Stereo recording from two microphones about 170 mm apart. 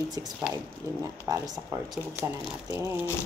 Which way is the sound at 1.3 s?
20° right (ahead or behind).